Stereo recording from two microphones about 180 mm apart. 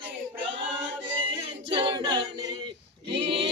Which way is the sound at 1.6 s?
30° right (ahead or behind).